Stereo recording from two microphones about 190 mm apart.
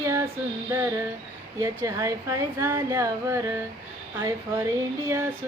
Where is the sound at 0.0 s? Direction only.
15° right (ahead or behind).